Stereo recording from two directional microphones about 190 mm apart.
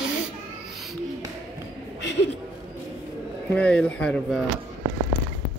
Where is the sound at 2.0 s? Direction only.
65° left (ahead or behind).